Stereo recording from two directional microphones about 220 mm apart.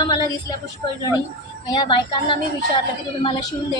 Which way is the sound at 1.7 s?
20° left (ahead or behind).